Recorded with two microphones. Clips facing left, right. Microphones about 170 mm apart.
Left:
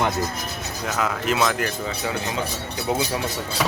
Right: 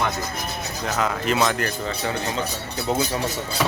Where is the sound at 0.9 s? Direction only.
5° left (ahead or behind).